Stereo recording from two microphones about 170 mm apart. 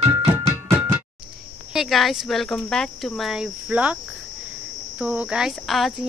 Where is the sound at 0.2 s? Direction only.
20° right (ahead or behind).